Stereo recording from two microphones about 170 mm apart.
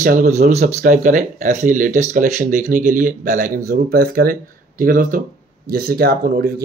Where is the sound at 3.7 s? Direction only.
60° right (ahead or behind).